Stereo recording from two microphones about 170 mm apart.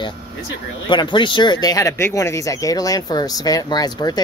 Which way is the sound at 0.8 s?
25° left (ahead or behind).